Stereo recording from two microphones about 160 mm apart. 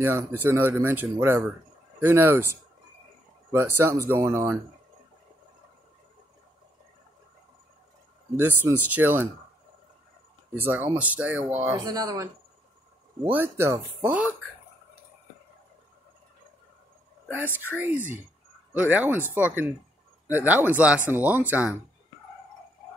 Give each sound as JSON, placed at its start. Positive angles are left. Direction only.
{"t": 0.0, "sound": "speech", "side_deg": -15}
{"t": 2.0, "sound": "speech", "side_deg": -15}
{"t": 3.5, "sound": "speech", "side_deg": -15}
{"t": 8.4, "sound": "speech", "side_deg": -10}
{"t": 10.5, "sound": "speech", "side_deg": -15}
{"t": 11.7, "sound": "speech", "side_deg": -25}
{"t": 13.3, "sound": "speech", "side_deg": -15}
{"t": 17.6, "sound": "speech", "side_deg": -10}